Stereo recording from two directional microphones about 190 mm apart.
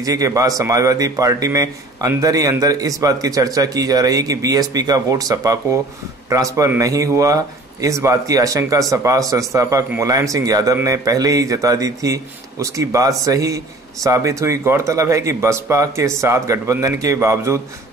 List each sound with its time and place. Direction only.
0.0 s a man's voice: 15° right (ahead or behind)